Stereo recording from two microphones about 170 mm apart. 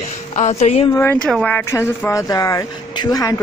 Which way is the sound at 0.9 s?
15° left (ahead or behind).